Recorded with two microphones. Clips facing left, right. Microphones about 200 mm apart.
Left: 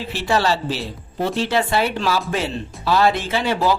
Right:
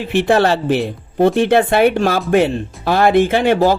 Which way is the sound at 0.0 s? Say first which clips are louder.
Right 7 dB; 55° right (ahead or behind).